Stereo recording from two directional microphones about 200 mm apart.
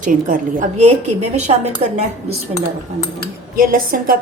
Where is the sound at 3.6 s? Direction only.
45° right (ahead or behind).